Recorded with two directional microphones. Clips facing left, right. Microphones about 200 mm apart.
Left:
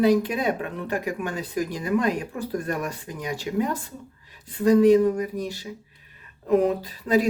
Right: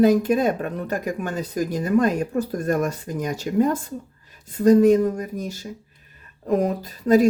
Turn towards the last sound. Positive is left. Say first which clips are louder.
# right 5 dB
turn(degrees=-45)  # may be behind; listen again after turning